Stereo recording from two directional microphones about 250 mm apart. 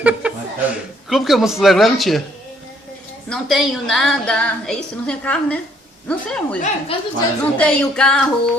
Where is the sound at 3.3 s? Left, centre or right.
Centre.